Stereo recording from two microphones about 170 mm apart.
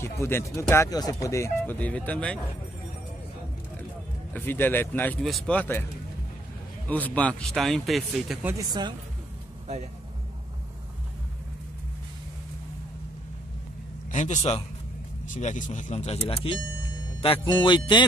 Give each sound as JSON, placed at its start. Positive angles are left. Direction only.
{"t": 0.0, "sound": "speech", "side_deg": 15}
{"t": 4.3, "sound": "speech", "side_deg": 10}
{"t": 6.9, "sound": "a man's voice", "side_deg": 10}
{"t": 8.5, "sound": "speech", "side_deg": -25}
{"t": 14.1, "sound": "a man's voice", "side_deg": 45}
{"t": 17.2, "sound": "music", "side_deg": 30}